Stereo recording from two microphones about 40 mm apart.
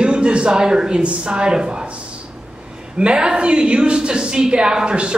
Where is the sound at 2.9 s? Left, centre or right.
Right.